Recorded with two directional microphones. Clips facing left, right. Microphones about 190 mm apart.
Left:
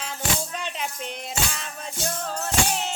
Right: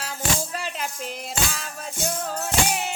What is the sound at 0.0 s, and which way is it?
Music, 5° right (ahead or behind).